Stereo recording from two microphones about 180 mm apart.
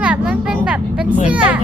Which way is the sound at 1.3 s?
5° right (ahead or behind).